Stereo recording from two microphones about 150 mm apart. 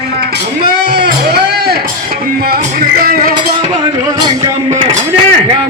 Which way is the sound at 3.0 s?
80° right.